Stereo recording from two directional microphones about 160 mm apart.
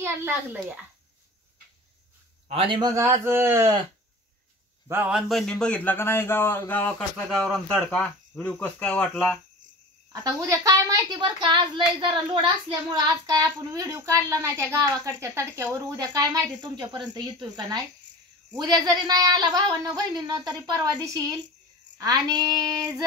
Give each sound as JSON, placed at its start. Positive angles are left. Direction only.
{"t": 0.0, "sound": "speech", "side_deg": -10}
{"t": 2.4, "sound": "a man's voice", "side_deg": -35}
{"t": 2.9, "sound": "speech", "side_deg": -15}
{"t": 4.8, "sound": "a man's voice", "side_deg": -10}
{"t": 5.3, "sound": "speech", "side_deg": 5}
{"t": 7.2, "sound": "speech", "side_deg": 0}
{"t": 10.1, "sound": "a woman's voice", "side_deg": -20}